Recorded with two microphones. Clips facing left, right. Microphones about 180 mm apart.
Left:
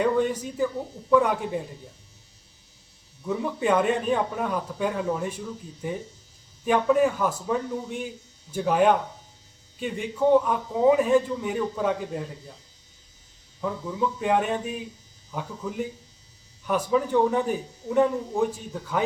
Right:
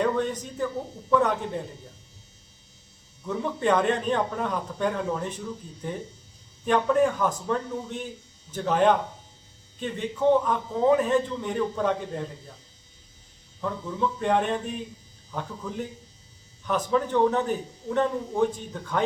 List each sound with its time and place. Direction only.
0.0 s a man's voice: 10° left (ahead or behind)
3.2 s a man's voice: 10° left (ahead or behind)
13.6 s a man's voice: 10° left (ahead or behind)